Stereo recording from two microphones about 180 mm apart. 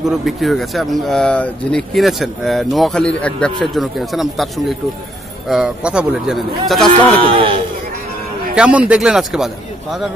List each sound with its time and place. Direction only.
0.0 s speech: centre (ahead or behind)
7.2 s speech: 30° right (ahead or behind)
8.5 s speech: 5° right (ahead or behind)